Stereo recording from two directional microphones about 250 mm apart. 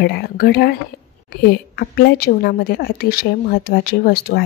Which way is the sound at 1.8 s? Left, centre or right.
Left.